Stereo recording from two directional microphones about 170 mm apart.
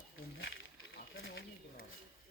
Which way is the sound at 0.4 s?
90° left.